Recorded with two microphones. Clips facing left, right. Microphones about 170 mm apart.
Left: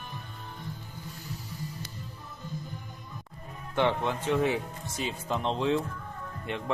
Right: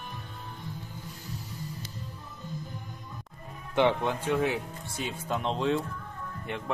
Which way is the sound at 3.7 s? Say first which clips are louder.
Right 2 dB; 15° right (ahead or behind).